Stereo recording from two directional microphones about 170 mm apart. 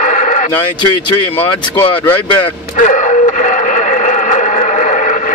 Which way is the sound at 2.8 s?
45° left (ahead or behind).